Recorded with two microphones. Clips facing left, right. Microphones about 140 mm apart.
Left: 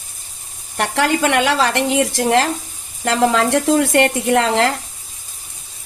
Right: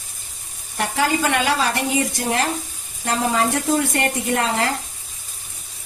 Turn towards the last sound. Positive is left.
turn(degrees=80)